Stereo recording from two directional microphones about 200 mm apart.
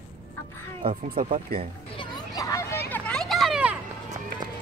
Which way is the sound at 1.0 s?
40° right (ahead or behind).